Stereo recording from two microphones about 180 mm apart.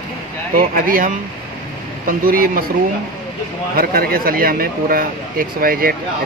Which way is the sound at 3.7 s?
55° right (ahead or behind).